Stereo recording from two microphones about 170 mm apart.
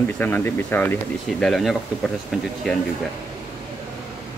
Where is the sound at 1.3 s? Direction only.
Centre (ahead or behind).